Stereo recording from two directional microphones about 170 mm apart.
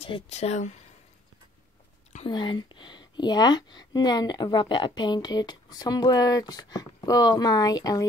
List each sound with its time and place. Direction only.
0.0 s speech: 35° left (ahead or behind)
2.2 s speech: 25° left (ahead or behind)